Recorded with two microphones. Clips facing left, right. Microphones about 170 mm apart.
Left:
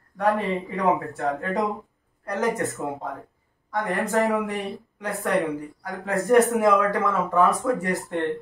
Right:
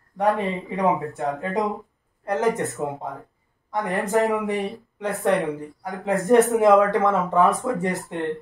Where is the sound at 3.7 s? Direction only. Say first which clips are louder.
Right 2 dB; 20° right (ahead or behind).